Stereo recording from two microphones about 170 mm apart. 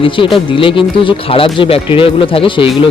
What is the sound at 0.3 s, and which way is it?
Speech, 30° left (ahead or behind).